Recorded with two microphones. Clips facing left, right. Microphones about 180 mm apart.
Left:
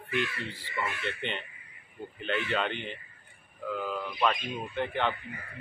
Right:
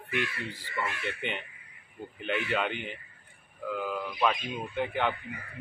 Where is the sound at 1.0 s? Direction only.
10° right (ahead or behind).